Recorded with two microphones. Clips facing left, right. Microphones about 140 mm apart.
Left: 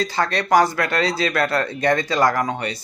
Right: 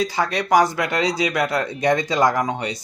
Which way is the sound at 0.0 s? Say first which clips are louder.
Even; 10° right (ahead or behind).